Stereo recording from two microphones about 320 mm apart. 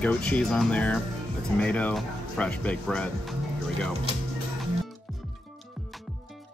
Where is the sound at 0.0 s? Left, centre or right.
Centre.